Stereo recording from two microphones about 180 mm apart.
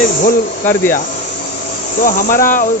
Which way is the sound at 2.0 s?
50° left (ahead or behind).